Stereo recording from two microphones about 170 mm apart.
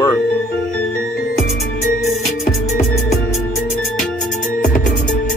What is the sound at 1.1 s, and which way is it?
Music, 60° left (ahead or behind).